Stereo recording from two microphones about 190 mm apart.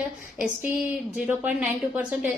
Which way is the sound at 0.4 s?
10° right (ahead or behind).